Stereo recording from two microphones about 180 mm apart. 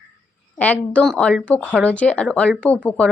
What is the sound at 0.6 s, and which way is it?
Speech, 10° left (ahead or behind).